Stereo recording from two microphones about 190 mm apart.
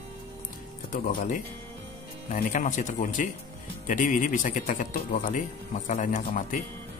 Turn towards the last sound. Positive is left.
turn(degrees=45)  # may be behind; listen again after turning